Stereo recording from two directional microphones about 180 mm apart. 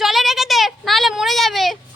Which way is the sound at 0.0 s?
Centre (ahead or behind).